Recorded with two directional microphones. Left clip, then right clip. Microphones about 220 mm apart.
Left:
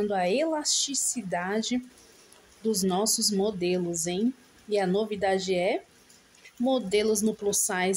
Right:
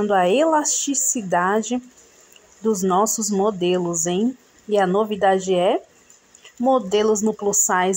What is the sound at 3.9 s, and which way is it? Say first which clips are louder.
Speech: right 7 dB; centre (ahead or behind).